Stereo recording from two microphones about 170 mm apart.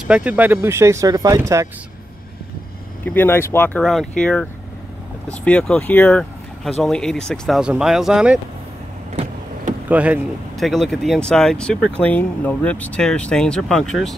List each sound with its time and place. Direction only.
0.0 s speech: 5° right (ahead or behind)
3.1 s speech: 10° left (ahead or behind); by 8.4 s 5° right (ahead or behind)
9.1 s vehicle: 45° right (ahead or behind)
9.8 s speech: 10° right (ahead or behind)